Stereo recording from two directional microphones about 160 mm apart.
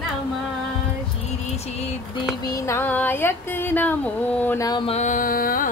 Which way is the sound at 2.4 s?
20° left (ahead or behind).